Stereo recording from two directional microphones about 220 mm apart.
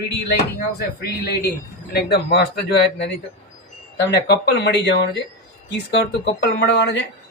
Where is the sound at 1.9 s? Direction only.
50° left (ahead or behind).